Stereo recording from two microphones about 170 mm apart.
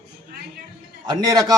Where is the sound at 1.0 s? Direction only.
25° right (ahead or behind).